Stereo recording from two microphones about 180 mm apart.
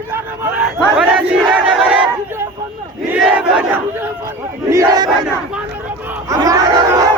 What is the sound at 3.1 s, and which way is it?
Crowd, 5° right (ahead or behind).